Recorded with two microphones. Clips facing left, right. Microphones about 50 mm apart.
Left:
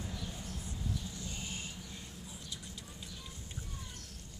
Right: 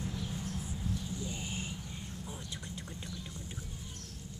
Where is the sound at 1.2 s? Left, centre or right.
Centre.